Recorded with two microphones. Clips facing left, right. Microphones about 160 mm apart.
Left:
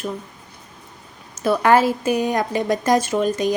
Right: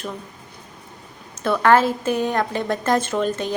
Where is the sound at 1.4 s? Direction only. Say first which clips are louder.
Left 1 dB; 10° left (ahead or behind).